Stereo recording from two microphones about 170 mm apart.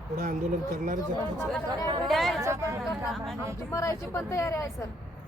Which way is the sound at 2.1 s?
Centre (ahead or behind).